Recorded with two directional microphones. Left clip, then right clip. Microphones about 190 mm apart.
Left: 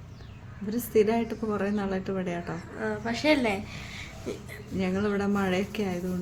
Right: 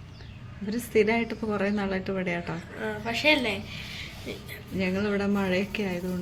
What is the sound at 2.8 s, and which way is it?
A woman's voice, 30° left (ahead or behind).